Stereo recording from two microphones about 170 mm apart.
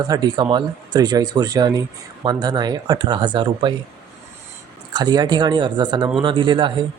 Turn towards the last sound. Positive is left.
turn(degrees=-30)  # may be behind; listen again after turning